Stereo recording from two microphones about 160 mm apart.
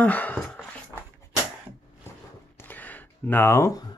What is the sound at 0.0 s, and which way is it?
Speech, 10° left (ahead or behind).